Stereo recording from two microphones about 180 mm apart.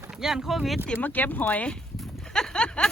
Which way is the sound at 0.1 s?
Centre (ahead or behind).